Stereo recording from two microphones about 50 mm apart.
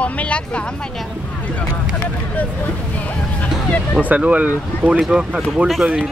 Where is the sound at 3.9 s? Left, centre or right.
Right.